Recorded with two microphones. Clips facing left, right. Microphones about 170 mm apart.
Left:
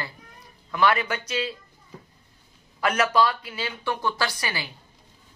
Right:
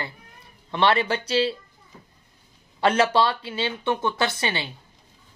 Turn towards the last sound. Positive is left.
turn(degrees=-25)  # may be behind; listen again after turning